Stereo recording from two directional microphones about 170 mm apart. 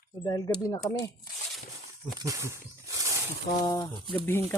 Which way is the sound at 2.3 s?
15° right (ahead or behind).